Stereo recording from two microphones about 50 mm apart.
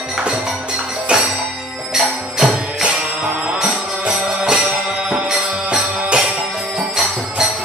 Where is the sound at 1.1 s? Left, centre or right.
Right.